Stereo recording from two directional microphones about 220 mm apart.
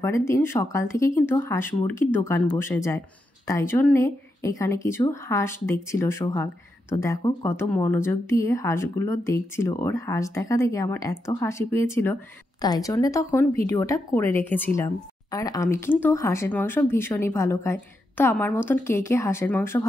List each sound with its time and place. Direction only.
0.0 s speech: 15° left (ahead or behind)